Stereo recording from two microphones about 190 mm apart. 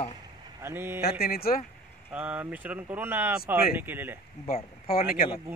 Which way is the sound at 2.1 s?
5° right (ahead or behind).